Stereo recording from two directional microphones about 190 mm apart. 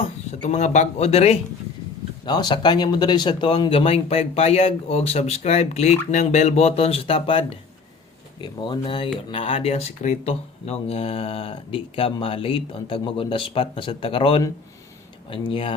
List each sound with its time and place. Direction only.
0.0 s speech: 35° left (ahead or behind)
2.2 s speech: 20° left (ahead or behind)